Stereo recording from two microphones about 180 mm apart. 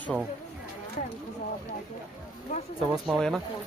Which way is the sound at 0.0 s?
Centre (ahead or behind).